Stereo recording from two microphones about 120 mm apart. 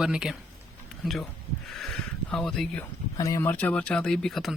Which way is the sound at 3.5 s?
10° left (ahead or behind).